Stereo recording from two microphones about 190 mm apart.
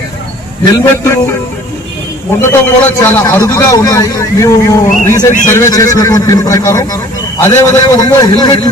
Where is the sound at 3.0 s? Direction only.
10° left (ahead or behind).